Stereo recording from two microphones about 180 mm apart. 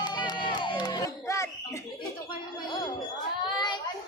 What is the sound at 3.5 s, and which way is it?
Children playing, 25° left (ahead or behind).